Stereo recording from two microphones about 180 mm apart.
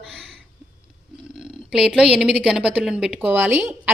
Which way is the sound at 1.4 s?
5° right (ahead or behind).